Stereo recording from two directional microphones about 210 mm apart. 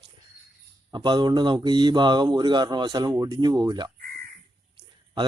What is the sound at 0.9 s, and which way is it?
Speech, 20° right (ahead or behind).